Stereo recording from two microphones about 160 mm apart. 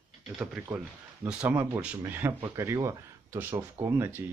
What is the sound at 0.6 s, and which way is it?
Speech, 5° right (ahead or behind).